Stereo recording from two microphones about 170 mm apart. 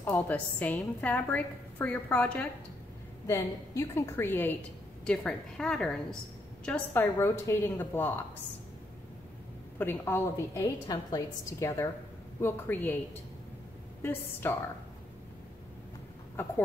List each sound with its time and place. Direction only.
0.1 s a woman's voice: 10° left (ahead or behind)
9.8 s a woman's voice: 15° left (ahead or behind)
14.4 s a woman's voice: 15° left (ahead or behind)